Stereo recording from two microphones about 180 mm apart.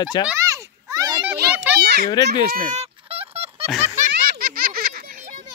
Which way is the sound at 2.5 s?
50° right (ahead or behind).